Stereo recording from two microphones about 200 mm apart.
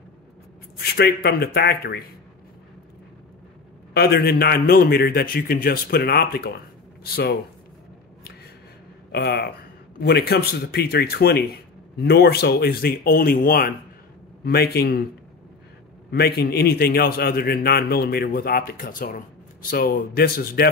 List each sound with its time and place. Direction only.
0.7 s a man's voice: 55° left (ahead or behind)
3.9 s a man's voice: 55° left (ahead or behind)
9.1 s a man's voice: 55° left (ahead or behind)
16.1 s a man's voice: 50° left (ahead or behind)